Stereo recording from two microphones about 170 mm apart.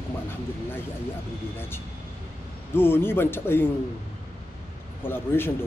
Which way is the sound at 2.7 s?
15° left (ahead or behind).